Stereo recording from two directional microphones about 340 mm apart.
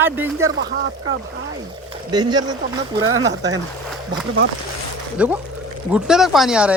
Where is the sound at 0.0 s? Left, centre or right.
Centre.